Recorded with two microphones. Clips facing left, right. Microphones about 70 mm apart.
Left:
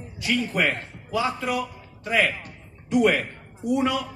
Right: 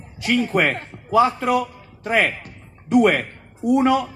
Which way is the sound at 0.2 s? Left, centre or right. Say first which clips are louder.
Right 5 dB; right.